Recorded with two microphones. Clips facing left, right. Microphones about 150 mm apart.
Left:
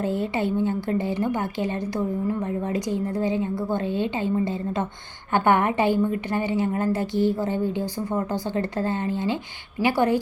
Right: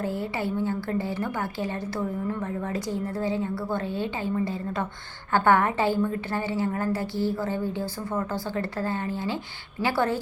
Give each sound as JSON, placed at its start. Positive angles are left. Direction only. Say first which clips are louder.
{"t": 0.0, "sound": "a woman's voice", "louder": "left 4 dB", "side_deg": 20}